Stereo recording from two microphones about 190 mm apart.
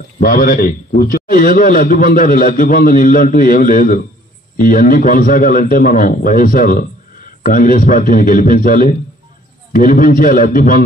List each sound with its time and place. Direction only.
0.2 s a man's voice: 50° left (ahead or behind)